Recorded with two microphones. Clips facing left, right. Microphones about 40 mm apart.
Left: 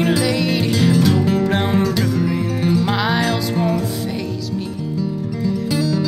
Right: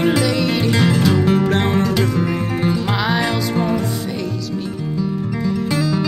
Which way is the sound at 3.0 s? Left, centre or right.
Centre.